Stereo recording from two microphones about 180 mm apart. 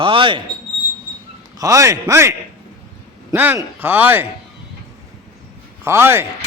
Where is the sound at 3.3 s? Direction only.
10° right (ahead or behind).